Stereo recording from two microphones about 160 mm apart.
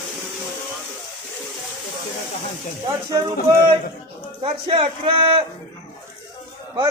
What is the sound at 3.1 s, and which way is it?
Speech, 25° right (ahead or behind).